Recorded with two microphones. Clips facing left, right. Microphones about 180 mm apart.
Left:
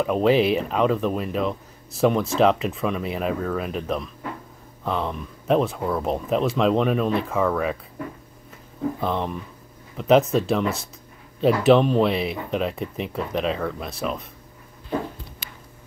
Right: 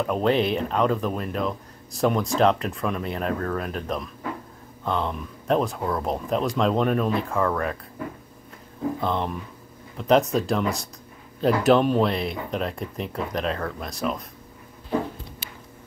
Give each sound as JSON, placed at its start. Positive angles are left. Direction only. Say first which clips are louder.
{"t": 0.0, "sound": "speech", "louder": "left 3 dB", "side_deg": 5}
{"t": 9.0, "sound": "speech", "louder": "even", "side_deg": 0}